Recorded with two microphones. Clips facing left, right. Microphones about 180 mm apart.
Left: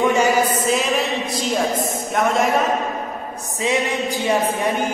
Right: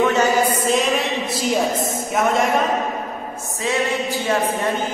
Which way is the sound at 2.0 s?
Centre (ahead or behind).